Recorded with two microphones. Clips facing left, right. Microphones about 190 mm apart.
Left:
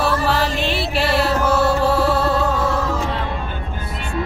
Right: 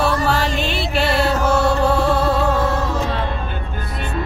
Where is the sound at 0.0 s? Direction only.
Centre (ahead or behind).